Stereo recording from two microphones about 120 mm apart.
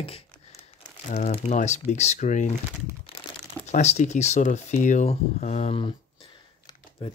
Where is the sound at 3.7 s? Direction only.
70° left (ahead or behind).